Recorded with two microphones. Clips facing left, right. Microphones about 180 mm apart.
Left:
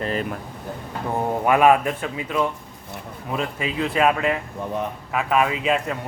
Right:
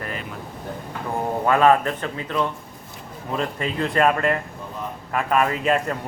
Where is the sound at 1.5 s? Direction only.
15° left (ahead or behind).